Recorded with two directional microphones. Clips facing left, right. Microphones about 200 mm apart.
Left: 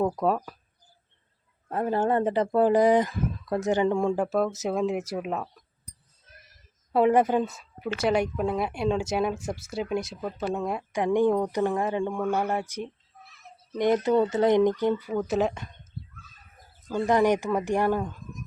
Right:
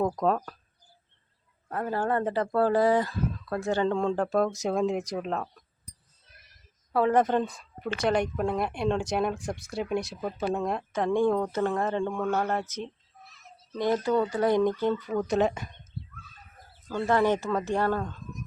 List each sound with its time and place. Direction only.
0.0 s speech: 10° left (ahead or behind)
1.7 s speech: 20° left (ahead or behind); by 5.6 s 5° left (ahead or behind)
6.9 s speech: 15° left (ahead or behind); by 10.6 s 5° right (ahead or behind)
10.6 s speech: 5° left (ahead or behind)
16.9 s speech: 15° left (ahead or behind)